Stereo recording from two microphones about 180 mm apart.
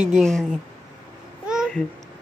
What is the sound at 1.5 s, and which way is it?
Babbling, centre (ahead or behind).